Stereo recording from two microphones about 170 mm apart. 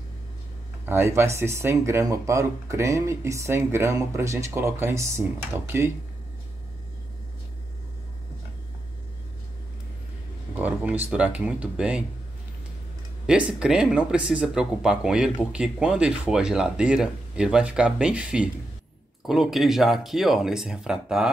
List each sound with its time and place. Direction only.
0.8 s speech: 15° right (ahead or behind)
10.5 s speech: 10° right (ahead or behind)
13.3 s speech: 5° right (ahead or behind)